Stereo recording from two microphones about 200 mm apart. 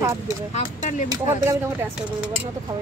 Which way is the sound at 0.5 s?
35° left (ahead or behind).